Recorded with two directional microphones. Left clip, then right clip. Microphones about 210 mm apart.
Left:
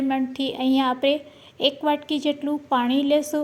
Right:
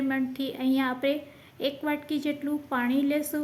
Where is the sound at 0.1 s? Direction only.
20° left (ahead or behind).